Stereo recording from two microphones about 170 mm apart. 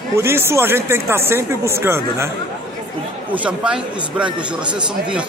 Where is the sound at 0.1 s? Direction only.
15° right (ahead or behind).